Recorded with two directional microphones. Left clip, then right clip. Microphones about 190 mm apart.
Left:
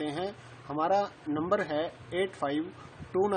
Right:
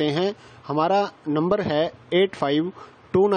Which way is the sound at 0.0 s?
45° right (ahead or behind).